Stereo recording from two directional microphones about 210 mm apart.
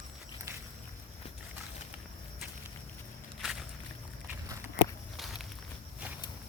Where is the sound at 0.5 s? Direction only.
15° right (ahead or behind).